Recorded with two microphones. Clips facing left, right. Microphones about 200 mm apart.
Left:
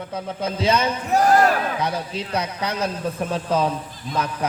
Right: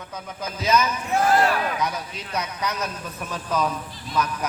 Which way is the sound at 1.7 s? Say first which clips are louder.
Left 3 dB; 30° left (ahead or behind).